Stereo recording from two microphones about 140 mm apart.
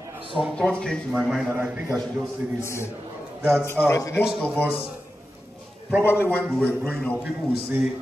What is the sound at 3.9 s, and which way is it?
Speech, 20° left (ahead or behind).